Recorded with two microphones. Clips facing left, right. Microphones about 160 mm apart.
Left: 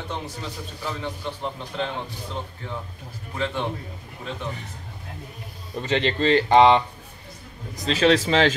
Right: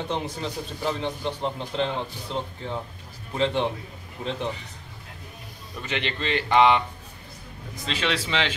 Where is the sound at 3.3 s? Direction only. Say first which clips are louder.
Right 4 dB; 20° right (ahead or behind).